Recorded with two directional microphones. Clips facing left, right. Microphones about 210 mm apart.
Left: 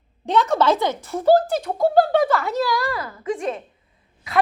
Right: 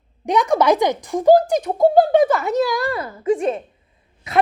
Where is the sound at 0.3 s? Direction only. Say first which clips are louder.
Right 2 dB; 15° right (ahead or behind).